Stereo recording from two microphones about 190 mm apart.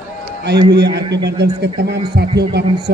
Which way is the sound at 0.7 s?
60° right (ahead or behind).